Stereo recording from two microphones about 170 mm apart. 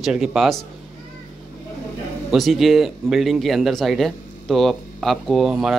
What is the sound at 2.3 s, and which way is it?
Speech, centre (ahead or behind).